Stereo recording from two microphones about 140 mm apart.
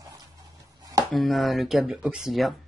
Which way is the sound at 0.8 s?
25° right (ahead or behind).